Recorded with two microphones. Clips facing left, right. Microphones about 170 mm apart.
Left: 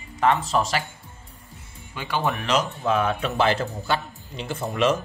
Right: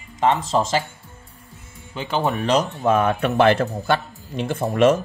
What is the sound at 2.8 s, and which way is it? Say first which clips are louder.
Speech: right 4 dB; 50° right (ahead or behind).